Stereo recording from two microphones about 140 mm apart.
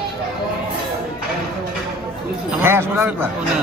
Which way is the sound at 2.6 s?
15° right (ahead or behind).